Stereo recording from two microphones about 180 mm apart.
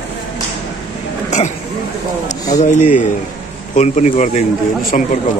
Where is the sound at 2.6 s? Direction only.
40° left (ahead or behind).